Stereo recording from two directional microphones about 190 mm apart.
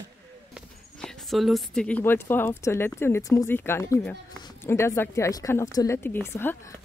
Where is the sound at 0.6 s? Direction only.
Centre (ahead or behind).